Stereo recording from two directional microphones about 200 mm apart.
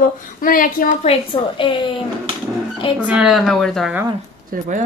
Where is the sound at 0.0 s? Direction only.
45° left (ahead or behind).